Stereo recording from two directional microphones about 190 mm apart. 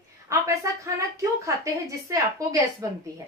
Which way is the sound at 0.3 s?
15° right (ahead or behind).